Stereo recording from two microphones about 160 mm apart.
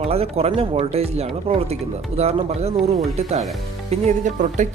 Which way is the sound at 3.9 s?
45° right (ahead or behind).